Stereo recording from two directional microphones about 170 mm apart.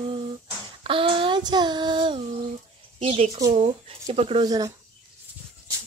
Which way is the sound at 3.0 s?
35° right (ahead or behind).